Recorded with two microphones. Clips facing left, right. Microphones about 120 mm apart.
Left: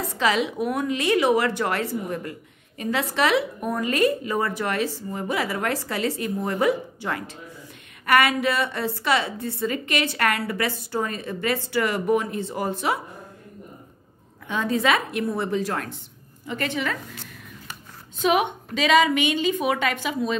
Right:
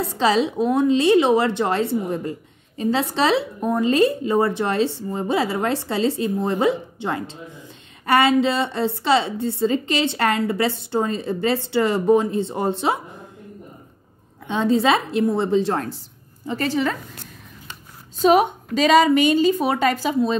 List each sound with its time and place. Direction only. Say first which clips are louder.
0.0 s a woman's voice: right 4 dB; 30° right (ahead or behind)
14.5 s a woman's voice: right 4 dB; 25° right (ahead or behind)
18.2 s a woman's voice: right 6 dB; 35° right (ahead or behind)